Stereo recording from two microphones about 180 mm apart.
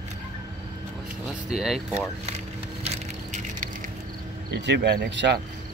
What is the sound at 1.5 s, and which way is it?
Speech, centre (ahead or behind).